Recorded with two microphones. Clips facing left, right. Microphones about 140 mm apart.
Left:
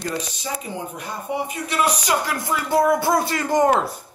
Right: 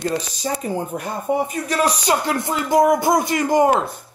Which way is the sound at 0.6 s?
45° right (ahead or behind).